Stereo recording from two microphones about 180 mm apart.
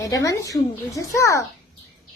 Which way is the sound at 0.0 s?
20° left (ahead or behind).